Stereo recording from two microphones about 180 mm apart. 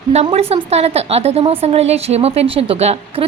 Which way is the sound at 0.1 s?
35° right (ahead or behind).